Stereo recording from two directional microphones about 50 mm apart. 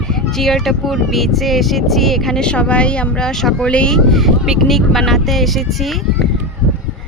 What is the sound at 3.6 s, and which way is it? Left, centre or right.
Speech, centre.